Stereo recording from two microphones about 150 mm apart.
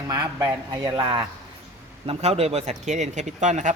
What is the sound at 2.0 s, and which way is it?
Speech, 40° right (ahead or behind).